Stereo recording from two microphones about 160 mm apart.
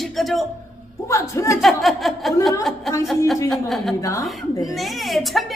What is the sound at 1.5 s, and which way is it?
Speech, centre (ahead or behind).